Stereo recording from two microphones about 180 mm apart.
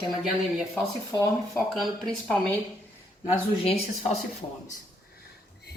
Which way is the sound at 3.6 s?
35° left (ahead or behind).